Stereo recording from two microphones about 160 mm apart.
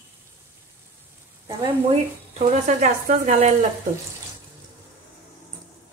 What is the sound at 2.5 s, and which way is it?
Speech, 50° right (ahead or behind).